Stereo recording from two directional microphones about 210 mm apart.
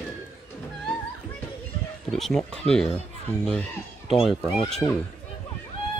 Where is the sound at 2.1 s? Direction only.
Centre (ahead or behind).